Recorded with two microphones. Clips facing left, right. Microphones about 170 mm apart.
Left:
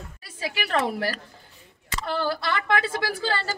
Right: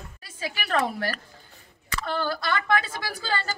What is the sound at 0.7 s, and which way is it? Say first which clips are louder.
A woman's voice: even; 25° left (ahead or behind).